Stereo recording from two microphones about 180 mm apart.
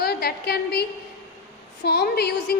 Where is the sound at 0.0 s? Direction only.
60° left (ahead or behind).